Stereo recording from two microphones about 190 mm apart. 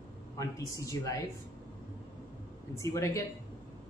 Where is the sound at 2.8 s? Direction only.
15° left (ahead or behind).